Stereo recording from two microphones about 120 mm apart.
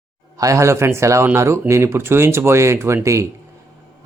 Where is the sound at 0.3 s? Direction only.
25° right (ahead or behind).